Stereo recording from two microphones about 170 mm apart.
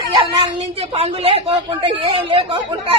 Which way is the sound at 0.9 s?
35° right (ahead or behind).